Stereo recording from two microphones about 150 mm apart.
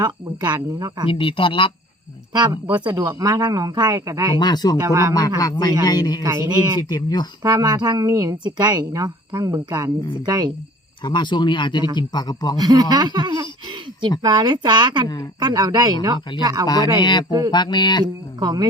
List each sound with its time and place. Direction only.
0.0 s a woman's voice: 25° right (ahead or behind)
1.1 s speech: 35° left (ahead or behind)
2.3 s a woman's voice: 30° right (ahead or behind)
4.4 s a man's voice: 30° left (ahead or behind)
4.8 s a woman's voice: 20° right (ahead or behind)
5.4 s a man's voice: 25° left (ahead or behind)
6.2 s a woman's voice: 25° right (ahead or behind)
6.8 s a man's voice: 30° left (ahead or behind)
7.4 s a woman's voice: 25° right (ahead or behind)
11.0 s a man's voice: 30° left (ahead or behind)
12.5 s a woman's voice: 25° right (ahead or behind)
17.0 s a man's voice: 30° left (ahead or behind)
18.0 s a woman's voice: 25° right (ahead or behind)